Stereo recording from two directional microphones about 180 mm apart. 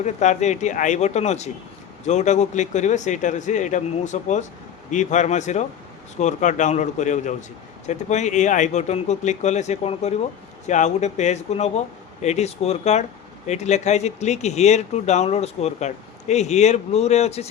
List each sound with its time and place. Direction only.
0.0 s a man's voice: 40° left (ahead or behind)